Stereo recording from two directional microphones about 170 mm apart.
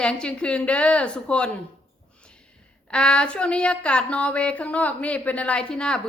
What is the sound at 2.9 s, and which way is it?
A woman's voice, 5° left (ahead or behind).